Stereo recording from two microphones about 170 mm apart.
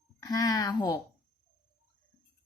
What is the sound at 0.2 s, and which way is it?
Speech, 20° left (ahead or behind).